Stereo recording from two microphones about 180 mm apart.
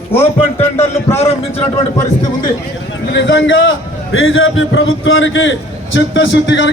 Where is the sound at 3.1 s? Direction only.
85° left.